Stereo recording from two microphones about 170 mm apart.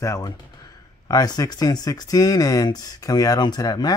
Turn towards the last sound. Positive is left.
turn(degrees=20)  # may be behind; listen again after turning